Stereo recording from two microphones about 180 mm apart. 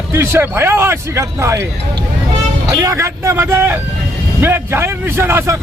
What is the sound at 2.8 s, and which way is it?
Speech, 15° right (ahead or behind).